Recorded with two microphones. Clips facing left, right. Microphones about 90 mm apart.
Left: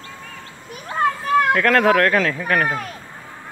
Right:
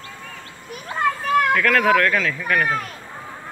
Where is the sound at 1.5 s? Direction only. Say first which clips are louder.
Left 2 dB; 30° left (ahead or behind).